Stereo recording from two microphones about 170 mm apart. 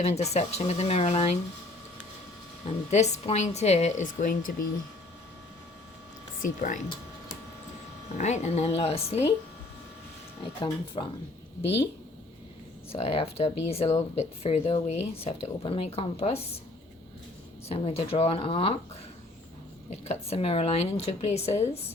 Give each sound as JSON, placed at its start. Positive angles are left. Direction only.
{"t": 0.0, "sound": "speech", "side_deg": 40}
{"t": 2.9, "sound": "speech", "side_deg": 40}
{"t": 6.4, "sound": "speech", "side_deg": 50}
{"t": 8.2, "sound": "speech", "side_deg": 40}
{"t": 10.6, "sound": "speech", "side_deg": 30}
{"t": 12.9, "sound": "speech", "side_deg": 35}
{"t": 17.7, "sound": "speech", "side_deg": 35}
{"t": 19.9, "sound": "speech", "side_deg": 35}